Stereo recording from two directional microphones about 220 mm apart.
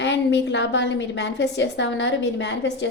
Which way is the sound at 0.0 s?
55° left (ahead or behind).